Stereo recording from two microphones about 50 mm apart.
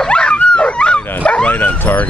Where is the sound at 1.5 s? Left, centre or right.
Left.